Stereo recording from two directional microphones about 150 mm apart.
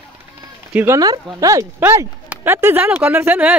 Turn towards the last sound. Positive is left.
turn(degrees=-10)  # may be behind; listen again after turning